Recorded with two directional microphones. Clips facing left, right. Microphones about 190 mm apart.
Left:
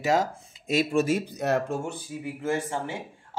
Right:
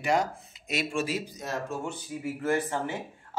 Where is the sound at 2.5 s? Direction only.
10° left (ahead or behind).